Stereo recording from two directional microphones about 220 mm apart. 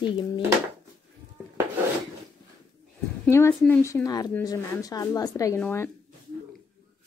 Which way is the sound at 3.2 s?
10° left (ahead or behind).